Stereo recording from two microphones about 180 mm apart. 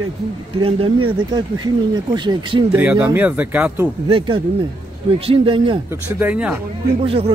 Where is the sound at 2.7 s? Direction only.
10° right (ahead or behind).